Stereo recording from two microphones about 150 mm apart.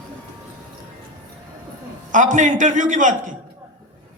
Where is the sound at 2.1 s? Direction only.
55° right (ahead or behind).